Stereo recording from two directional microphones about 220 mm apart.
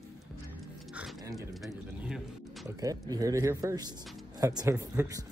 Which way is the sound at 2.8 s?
15° right (ahead or behind).